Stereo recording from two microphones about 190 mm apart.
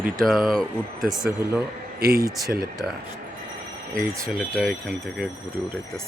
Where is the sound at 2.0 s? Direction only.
55° right (ahead or behind).